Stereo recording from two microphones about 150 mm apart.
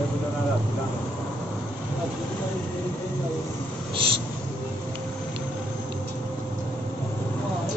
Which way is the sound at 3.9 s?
35° right (ahead or behind).